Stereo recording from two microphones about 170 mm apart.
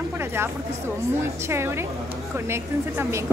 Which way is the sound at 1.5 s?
15° right (ahead or behind).